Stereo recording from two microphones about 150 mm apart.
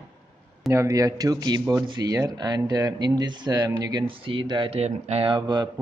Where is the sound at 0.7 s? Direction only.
20° right (ahead or behind).